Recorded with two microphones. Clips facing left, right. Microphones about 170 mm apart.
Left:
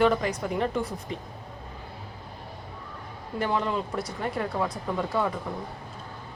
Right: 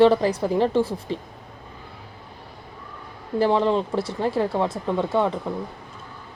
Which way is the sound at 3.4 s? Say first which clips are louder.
Right 8 dB; 30° right (ahead or behind).